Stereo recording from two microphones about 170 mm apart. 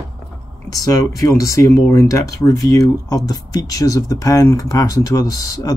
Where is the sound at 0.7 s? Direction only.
20° left (ahead or behind).